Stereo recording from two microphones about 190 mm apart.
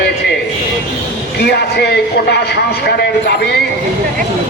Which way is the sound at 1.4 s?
60° left (ahead or behind).